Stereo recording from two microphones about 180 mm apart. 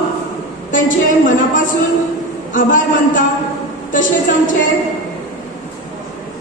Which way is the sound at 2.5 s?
45° left (ahead or behind).